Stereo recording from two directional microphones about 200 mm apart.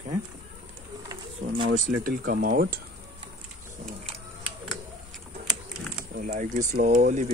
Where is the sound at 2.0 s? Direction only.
45° right (ahead or behind).